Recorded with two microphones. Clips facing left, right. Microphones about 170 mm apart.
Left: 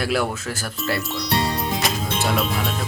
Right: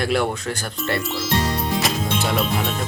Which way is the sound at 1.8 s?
Centre (ahead or behind).